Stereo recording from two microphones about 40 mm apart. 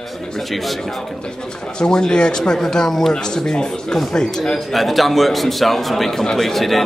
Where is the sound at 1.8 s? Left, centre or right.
Centre.